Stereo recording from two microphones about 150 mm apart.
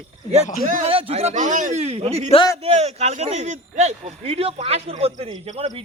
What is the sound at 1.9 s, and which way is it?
A man's voice, 40° right (ahead or behind).